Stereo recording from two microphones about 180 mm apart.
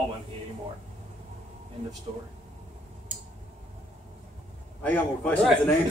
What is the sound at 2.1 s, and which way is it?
Speech, 35° right (ahead or behind).